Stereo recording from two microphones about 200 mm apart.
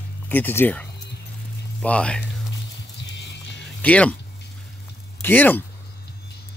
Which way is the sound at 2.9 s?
60° left (ahead or behind).